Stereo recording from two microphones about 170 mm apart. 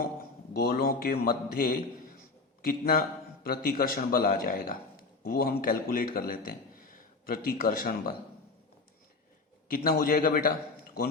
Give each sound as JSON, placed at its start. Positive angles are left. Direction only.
{"t": 0.0, "sound": "a man's voice", "side_deg": 60}
{"t": 9.6, "sound": "a man's voice", "side_deg": 55}